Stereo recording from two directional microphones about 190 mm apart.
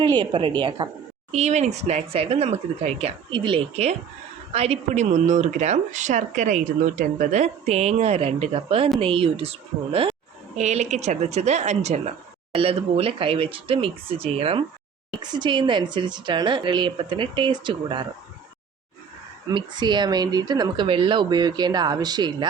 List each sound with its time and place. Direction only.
0.2 s speech: 25° right (ahead or behind)
1.3 s a woman's voice: 35° right (ahead or behind)
19.5 s speech: 25° right (ahead or behind)